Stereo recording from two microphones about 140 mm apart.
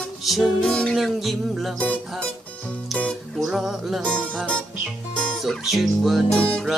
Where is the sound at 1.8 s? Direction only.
10° left (ahead or behind).